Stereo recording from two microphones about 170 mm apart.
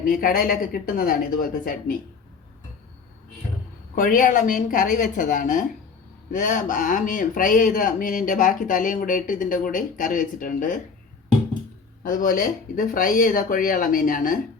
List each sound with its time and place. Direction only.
0.0 s speech: 55° left (ahead or behind)
3.9 s speech: 50° left (ahead or behind)
12.0 s speech: 50° left (ahead or behind)